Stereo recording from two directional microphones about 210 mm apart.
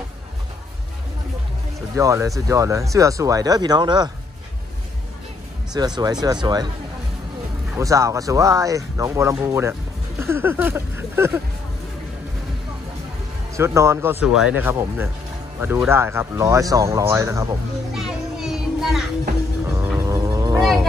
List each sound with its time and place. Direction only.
2.0 s speech: 15° right (ahead or behind)
5.8 s speech: 20° right (ahead or behind)
7.7 s speech: 15° right (ahead or behind)
13.6 s speech: 15° right (ahead or behind)
17.9 s music: centre (ahead or behind)